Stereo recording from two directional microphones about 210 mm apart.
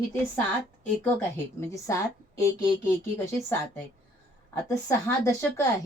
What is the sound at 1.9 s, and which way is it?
A woman's voice, 15° left (ahead or behind).